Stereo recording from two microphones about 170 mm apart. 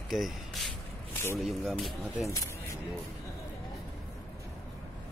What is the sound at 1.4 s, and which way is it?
Speech, centre (ahead or behind).